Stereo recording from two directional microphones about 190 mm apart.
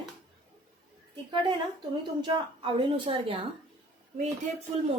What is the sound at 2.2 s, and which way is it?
A woman's voice, 25° right (ahead or behind).